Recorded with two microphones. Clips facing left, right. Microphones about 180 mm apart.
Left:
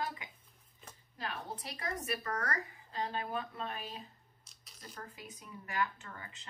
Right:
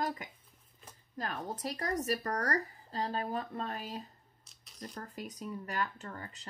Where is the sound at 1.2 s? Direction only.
45° right (ahead or behind).